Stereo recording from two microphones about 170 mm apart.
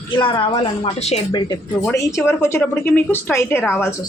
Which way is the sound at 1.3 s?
25° left (ahead or behind).